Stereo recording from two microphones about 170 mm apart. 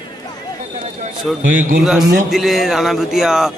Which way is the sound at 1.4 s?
50° right (ahead or behind).